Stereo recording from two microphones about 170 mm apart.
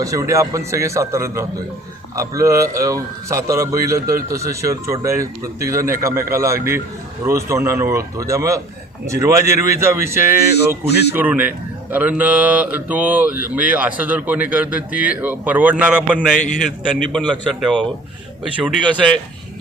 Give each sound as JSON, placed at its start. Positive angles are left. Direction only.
{"t": 0.0, "sound": "a man's voice", "side_deg": -20}
{"t": 16.1, "sound": "a man's voice", "side_deg": 5}
{"t": 17.5, "sound": "speech", "side_deg": 0}
{"t": 19.0, "sound": "speech", "side_deg": 0}